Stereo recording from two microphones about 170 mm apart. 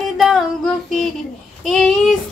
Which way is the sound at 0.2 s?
Centre (ahead or behind).